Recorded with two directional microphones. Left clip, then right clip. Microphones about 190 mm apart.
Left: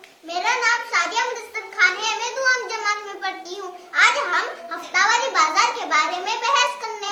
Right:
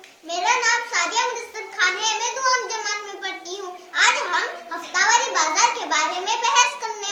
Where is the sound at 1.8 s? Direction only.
25° left (ahead or behind).